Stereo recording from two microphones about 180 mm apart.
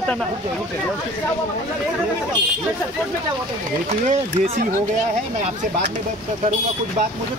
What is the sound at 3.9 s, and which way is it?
Speech, 40° right (ahead or behind).